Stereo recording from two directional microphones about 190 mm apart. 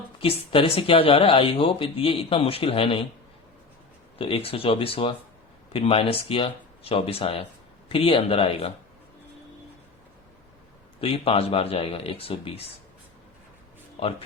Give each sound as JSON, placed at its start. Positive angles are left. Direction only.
{"t": 0.2, "sound": "speech", "side_deg": 30}
{"t": 4.2, "sound": "speech", "side_deg": 30}
{"t": 11.0, "sound": "speech", "side_deg": 30}